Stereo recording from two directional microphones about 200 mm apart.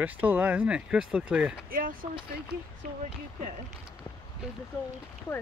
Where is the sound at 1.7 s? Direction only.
45° right (ahead or behind).